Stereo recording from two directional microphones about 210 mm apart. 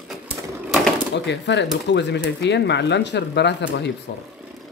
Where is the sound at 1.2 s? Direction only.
55° left (ahead or behind).